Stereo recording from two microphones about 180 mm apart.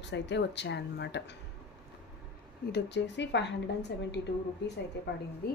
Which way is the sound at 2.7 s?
70° left (ahead or behind).